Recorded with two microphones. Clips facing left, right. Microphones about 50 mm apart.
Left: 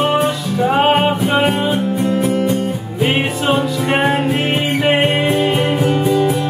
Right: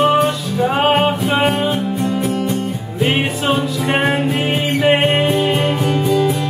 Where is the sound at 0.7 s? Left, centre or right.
Centre.